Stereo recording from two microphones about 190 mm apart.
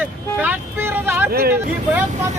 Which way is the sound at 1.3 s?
55° right (ahead or behind).